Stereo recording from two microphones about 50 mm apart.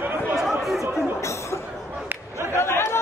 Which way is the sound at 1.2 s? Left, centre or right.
Left.